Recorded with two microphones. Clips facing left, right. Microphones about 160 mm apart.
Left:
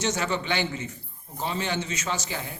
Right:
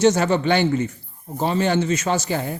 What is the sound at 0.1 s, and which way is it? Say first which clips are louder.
A man's voice: right 9 dB; 50° right (ahead or behind).